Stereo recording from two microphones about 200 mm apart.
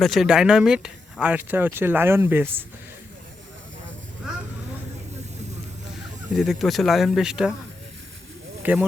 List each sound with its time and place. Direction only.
0.0 s speech: centre (ahead or behind)
6.3 s speech: centre (ahead or behind)
8.7 s speech: 10° right (ahead or behind)